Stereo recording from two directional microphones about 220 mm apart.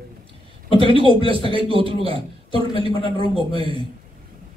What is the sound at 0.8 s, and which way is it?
A man's voice, 25° right (ahead or behind).